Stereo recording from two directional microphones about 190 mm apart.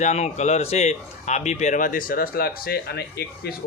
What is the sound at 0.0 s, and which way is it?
A man's voice, 35° left (ahead or behind).